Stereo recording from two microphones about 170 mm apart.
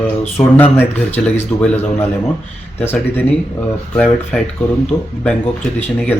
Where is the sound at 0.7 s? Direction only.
10° left (ahead or behind).